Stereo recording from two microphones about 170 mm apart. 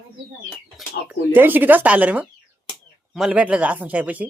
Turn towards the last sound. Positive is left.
turn(degrees=-10)  # may be behind; listen again after turning